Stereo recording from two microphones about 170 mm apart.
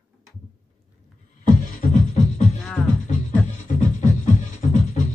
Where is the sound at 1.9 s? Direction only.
45° left (ahead or behind).